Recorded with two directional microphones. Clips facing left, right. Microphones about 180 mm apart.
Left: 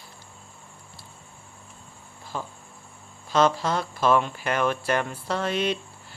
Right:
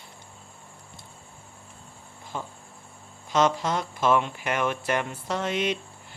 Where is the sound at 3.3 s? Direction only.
20° right (ahead or behind).